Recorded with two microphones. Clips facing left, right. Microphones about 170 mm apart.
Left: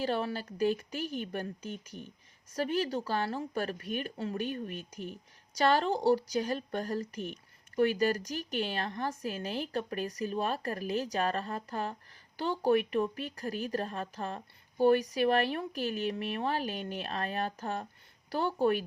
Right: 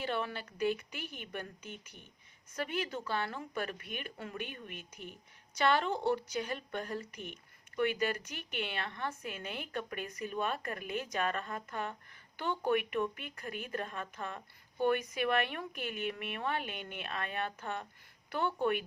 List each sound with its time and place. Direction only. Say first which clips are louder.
0.0 s a woman's voice: left 5 dB; 35° left (ahead or behind)